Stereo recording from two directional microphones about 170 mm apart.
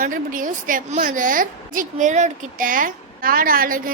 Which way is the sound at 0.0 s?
55° right (ahead or behind).